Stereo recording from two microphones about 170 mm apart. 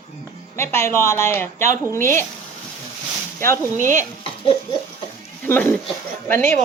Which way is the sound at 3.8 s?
45° right (ahead or behind).